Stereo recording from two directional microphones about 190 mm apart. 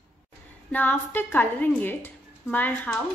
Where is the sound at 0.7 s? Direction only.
10° left (ahead or behind).